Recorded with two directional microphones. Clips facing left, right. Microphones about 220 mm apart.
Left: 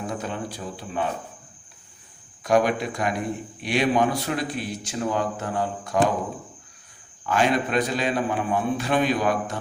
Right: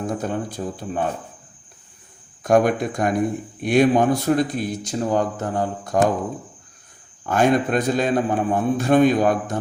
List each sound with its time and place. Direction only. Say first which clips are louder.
0.1 s speech: right 5 dB; 50° right (ahead or behind)
2.4 s speech: right 4 dB; 50° right (ahead or behind)
7.3 s speech: right 4 dB; 50° right (ahead or behind)